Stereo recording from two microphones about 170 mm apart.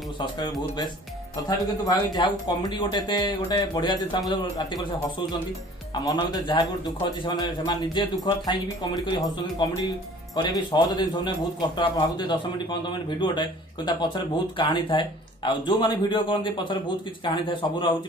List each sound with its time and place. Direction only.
0.2 s speech: 25° left (ahead or behind)
1.9 s speech: 20° left (ahead or behind)
6.0 s speech: 25° left (ahead or behind)